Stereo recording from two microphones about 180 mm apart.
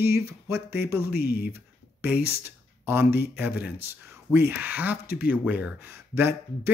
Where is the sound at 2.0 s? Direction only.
10° right (ahead or behind).